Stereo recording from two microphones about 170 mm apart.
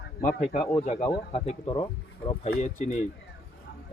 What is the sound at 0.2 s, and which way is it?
Speech, 45° left (ahead or behind).